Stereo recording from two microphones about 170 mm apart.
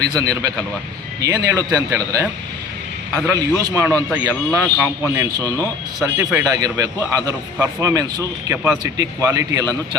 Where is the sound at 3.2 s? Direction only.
20° right (ahead or behind).